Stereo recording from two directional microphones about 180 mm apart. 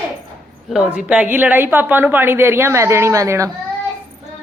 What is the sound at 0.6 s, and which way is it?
A woman's voice, 5° right (ahead or behind).